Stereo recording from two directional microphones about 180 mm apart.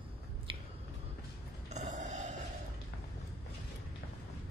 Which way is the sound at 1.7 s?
40° right (ahead or behind).